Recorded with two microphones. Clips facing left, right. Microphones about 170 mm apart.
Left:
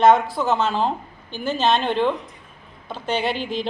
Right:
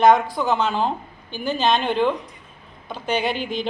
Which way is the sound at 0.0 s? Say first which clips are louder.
Even; centre (ahead or behind).